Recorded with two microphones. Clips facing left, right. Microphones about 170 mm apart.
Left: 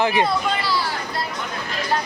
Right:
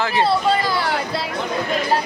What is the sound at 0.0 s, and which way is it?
Speech, 15° left (ahead or behind).